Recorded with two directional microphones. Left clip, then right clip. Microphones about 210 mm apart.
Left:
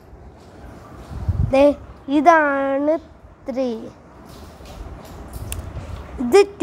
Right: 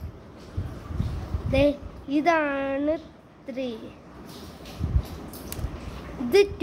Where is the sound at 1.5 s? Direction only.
20° left (ahead or behind).